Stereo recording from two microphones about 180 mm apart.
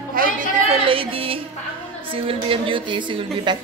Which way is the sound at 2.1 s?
30° right (ahead or behind).